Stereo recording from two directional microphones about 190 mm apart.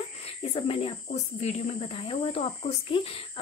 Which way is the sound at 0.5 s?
30° left (ahead or behind).